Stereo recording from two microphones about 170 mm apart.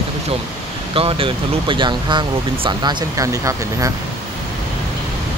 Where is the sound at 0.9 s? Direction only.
30° right (ahead or behind).